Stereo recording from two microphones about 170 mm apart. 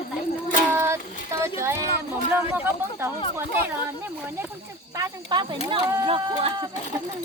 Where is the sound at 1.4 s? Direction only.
15° right (ahead or behind).